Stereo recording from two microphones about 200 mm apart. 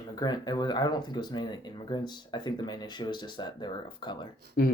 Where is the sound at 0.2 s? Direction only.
20° left (ahead or behind).